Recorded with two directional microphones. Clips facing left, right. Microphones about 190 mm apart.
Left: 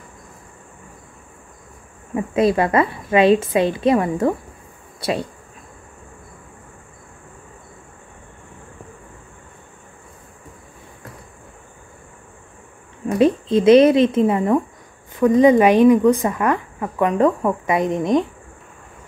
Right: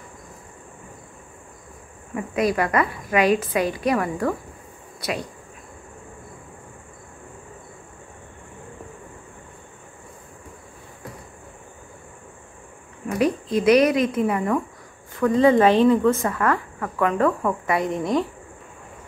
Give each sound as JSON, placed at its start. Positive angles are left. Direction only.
{"t": 2.1, "sound": "speech", "side_deg": 25}
{"t": 13.2, "sound": "speech", "side_deg": 25}